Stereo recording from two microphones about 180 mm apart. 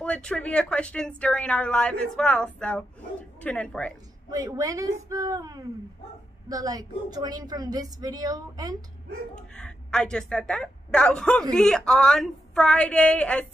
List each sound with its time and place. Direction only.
0.0 s speech: 5° left (ahead or behind)
4.3 s a woman's voice: 20° right (ahead or behind)
9.5 s speech: 5° left (ahead or behind)